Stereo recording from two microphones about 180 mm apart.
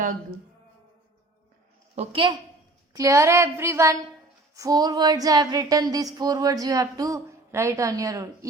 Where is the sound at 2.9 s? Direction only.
15° right (ahead or behind).